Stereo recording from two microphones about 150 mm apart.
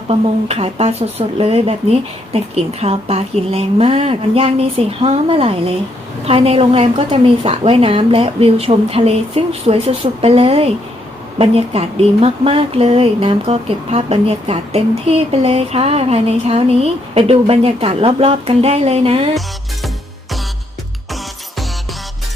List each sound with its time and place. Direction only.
0.1 s speech: 40° right (ahead or behind)